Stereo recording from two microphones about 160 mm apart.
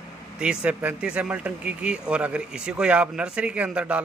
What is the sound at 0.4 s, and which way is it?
Speech, 5° right (ahead or behind).